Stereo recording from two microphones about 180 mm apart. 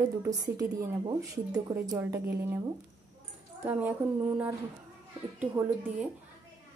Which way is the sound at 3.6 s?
10° right (ahead or behind).